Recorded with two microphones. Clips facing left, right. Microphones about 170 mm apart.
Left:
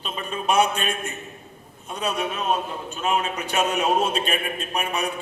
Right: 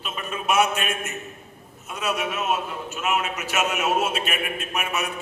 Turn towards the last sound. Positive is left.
turn(degrees=35)  # may be behind; listen again after turning